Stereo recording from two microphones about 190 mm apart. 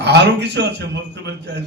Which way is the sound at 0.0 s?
65° right (ahead or behind).